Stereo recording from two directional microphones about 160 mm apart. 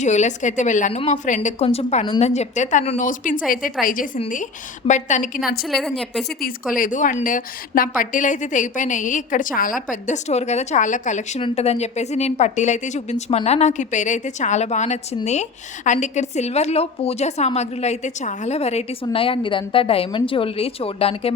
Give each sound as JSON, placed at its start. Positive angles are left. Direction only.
{"t": 0.0, "sound": "a woman's voice", "side_deg": 50}
{"t": 5.6, "sound": "a woman's voice", "side_deg": 0}
{"t": 6.4, "sound": "a woman's voice", "side_deg": 60}
{"t": 9.9, "sound": "a woman's voice", "side_deg": 45}